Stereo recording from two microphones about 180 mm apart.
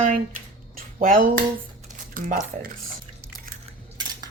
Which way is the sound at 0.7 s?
50° right (ahead or behind).